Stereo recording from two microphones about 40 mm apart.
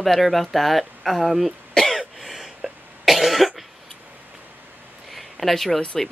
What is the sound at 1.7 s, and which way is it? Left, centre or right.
Cough, centre.